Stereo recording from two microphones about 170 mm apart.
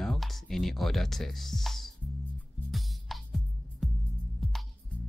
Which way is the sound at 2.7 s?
Centre (ahead or behind).